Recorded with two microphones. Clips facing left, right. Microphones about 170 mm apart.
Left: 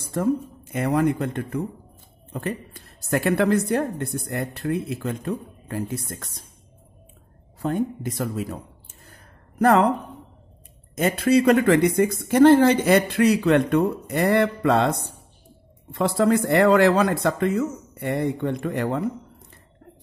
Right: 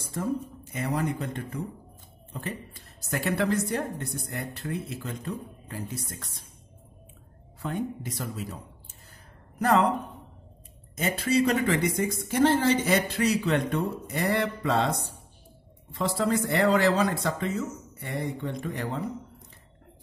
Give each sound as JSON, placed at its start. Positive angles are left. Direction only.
{"t": 0.7, "sound": "a woman's voice", "side_deg": 60}
{"t": 7.6, "sound": "a woman's voice", "side_deg": 50}
{"t": 9.6, "sound": "a woman's voice", "side_deg": 60}
{"t": 11.0, "sound": "a woman's voice", "side_deg": 55}